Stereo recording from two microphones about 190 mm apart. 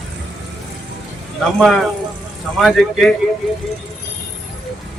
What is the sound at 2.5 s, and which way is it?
Speech, centre (ahead or behind).